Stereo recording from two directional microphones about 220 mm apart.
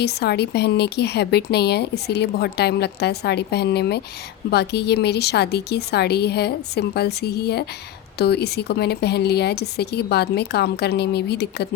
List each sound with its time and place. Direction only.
0.0 s a woman's voice: 50° left (ahead or behind)